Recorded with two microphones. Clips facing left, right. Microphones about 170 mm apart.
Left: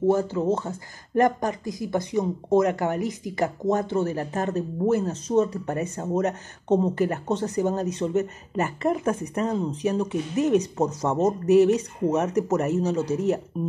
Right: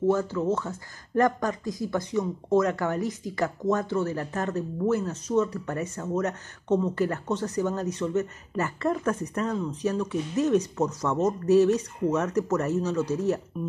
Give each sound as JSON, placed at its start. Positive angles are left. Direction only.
{"t": 0.3, "sound": "speech", "side_deg": 25}